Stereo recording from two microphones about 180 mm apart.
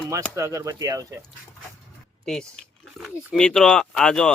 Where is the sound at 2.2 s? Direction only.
5° left (ahead or behind).